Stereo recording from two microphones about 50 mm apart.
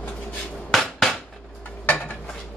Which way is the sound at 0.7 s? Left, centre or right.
Centre.